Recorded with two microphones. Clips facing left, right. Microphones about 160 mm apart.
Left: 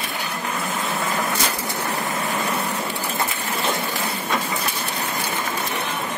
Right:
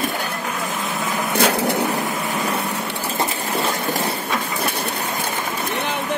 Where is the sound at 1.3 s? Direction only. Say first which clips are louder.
Right 8 dB; 65° right (ahead or behind).